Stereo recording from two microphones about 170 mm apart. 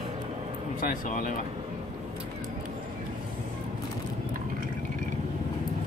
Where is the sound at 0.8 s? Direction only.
55° left (ahead or behind).